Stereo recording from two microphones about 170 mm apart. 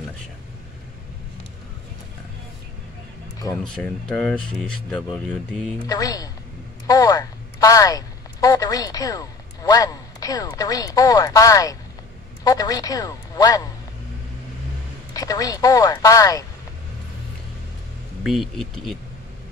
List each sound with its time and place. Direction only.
3.6 s speech: 5° left (ahead or behind)
5.9 s speech: 20° left (ahead or behind)
6.9 s a sound: 20° left (ahead or behind)
12.4 s speech: 20° left (ahead or behind)
15.1 s speech: 20° left (ahead or behind)
18.2 s speech: centre (ahead or behind)